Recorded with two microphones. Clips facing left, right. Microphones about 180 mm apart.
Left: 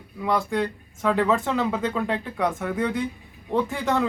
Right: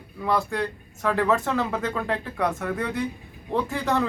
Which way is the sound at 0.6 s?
5° left (ahead or behind).